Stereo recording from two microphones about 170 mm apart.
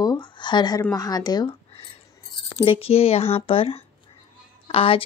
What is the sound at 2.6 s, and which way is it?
Speech, 35° left (ahead or behind).